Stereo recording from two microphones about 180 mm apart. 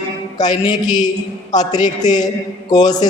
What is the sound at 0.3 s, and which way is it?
A man's voice, 25° left (ahead or behind).